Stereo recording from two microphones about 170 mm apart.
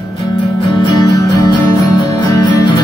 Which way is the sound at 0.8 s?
25° left (ahead or behind).